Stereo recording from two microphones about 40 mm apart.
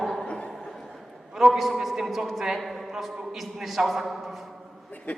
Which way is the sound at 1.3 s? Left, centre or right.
Centre.